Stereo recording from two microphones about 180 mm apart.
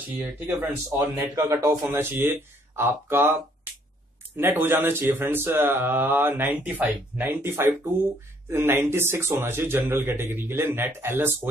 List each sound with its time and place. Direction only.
0.2 s speech: 10° right (ahead or behind)
4.4 s speech: 10° right (ahead or behind)